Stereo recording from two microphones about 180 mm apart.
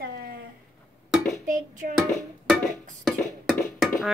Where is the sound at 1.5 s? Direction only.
50° right (ahead or behind).